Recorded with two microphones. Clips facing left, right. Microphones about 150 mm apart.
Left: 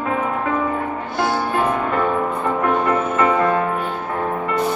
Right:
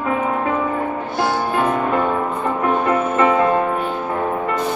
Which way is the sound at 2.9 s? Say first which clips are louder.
Right 2 dB; 20° right (ahead or behind).